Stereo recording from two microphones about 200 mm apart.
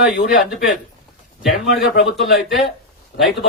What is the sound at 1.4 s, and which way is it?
Speech, centre (ahead or behind).